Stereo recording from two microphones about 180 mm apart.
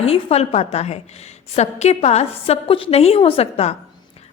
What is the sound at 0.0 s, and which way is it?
A woman's voice, 35° left (ahead or behind).